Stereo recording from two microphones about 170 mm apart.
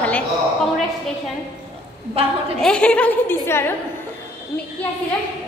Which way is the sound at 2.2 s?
35° right (ahead or behind).